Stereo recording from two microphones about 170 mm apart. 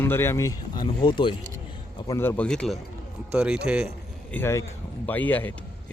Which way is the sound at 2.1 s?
15° left (ahead or behind).